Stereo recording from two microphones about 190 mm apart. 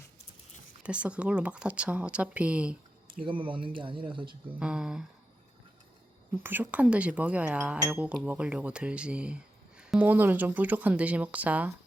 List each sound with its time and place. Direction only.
0.8 s speech: 5° right (ahead or behind)
3.2 s speech: 25° right (ahead or behind)
4.6 s speech: 5° right (ahead or behind)
6.4 s speech: 10° right (ahead or behind)